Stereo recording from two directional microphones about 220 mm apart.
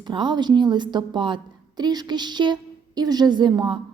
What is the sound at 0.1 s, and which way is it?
A woman's voice, 20° right (ahead or behind).